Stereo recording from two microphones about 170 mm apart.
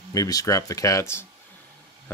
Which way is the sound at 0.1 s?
20° left (ahead or behind).